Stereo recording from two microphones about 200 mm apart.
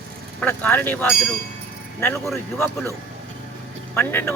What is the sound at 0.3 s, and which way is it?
Speech, 10° left (ahead or behind).